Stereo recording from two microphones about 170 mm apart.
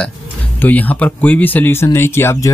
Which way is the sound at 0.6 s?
10° left (ahead or behind).